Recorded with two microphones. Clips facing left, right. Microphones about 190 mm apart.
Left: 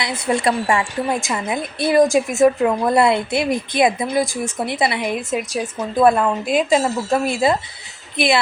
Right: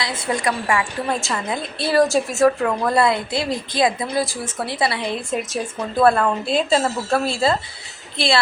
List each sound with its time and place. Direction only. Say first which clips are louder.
0.0 s a woman's voice: left 3 dB; 30° left (ahead or behind)
1.1 s a woman's voice: left 2 dB; 15° left (ahead or behind)